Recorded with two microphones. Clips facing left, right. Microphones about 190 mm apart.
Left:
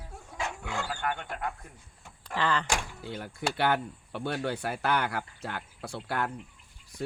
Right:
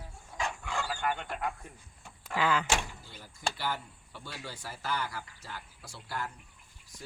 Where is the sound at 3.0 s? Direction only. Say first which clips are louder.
Left 5 dB; 65° left (ahead or behind).